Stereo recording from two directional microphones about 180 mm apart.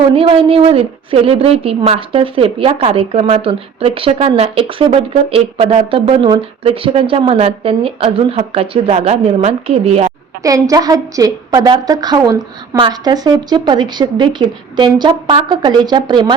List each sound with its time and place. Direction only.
0.1 s a woman's voice: 30° right (ahead or behind)
10.4 s a woman's voice: 20° right (ahead or behind)